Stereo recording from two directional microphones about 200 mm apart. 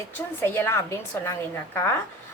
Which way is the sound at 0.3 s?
10° left (ahead or behind).